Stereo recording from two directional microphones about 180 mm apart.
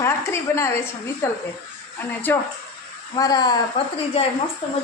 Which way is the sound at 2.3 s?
15° left (ahead or behind).